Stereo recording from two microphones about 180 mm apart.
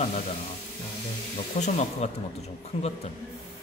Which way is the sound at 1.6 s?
40° left (ahead or behind).